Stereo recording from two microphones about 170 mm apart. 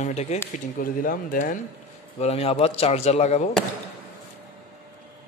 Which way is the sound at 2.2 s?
35° left (ahead or behind).